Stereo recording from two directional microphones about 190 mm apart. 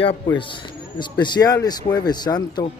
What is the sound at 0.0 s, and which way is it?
Speech, 25° left (ahead or behind).